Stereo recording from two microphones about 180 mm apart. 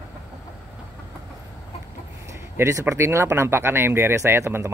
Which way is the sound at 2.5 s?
15° right (ahead or behind).